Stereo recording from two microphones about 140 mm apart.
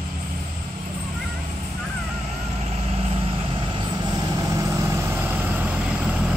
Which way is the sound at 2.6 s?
45° right (ahead or behind).